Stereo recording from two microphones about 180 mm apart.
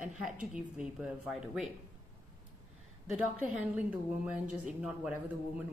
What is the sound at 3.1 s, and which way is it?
A woman's voice, 10° right (ahead or behind).